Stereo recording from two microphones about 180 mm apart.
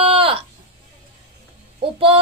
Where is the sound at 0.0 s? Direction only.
30° right (ahead or behind).